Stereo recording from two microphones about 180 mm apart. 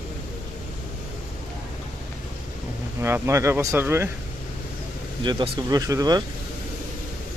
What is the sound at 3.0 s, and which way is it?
Speech, 15° right (ahead or behind).